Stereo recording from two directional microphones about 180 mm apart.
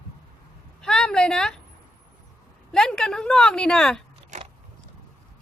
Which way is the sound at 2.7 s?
5° left (ahead or behind).